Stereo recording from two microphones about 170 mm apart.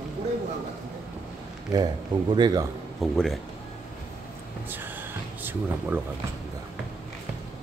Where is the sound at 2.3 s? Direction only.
25° right (ahead or behind).